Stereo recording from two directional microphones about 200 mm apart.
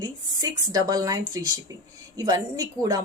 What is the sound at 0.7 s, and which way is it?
Speech, 20° right (ahead or behind).